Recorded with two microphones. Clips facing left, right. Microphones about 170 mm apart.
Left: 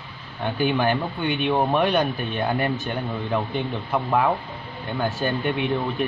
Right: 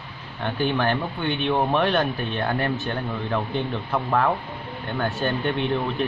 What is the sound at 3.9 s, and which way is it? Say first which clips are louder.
Speech: left 1 dB; 15° left (ahead or behind).